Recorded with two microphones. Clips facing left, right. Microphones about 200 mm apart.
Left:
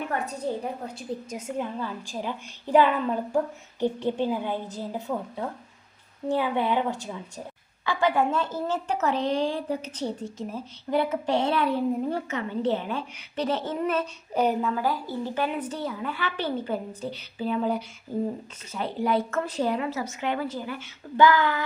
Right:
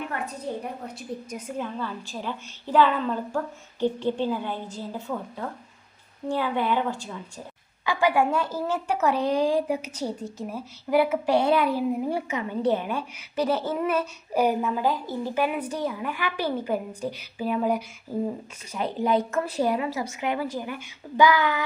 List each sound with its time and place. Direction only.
1.3 s a woman's voice: 25° left (ahead or behind)
6.2 s speech: 20° left (ahead or behind)
7.9 s a woman's voice: 10° right (ahead or behind)